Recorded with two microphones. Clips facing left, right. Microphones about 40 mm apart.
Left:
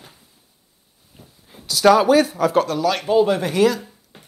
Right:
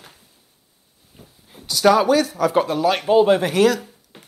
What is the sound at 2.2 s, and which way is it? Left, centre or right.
Speech, centre.